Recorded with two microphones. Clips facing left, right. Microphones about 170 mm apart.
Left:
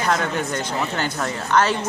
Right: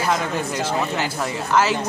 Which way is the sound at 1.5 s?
5° right (ahead or behind).